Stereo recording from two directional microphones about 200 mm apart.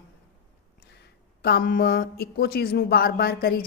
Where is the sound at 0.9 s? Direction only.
55° left (ahead or behind).